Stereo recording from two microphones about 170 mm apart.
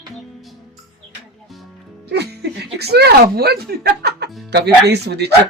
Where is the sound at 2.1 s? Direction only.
80° right.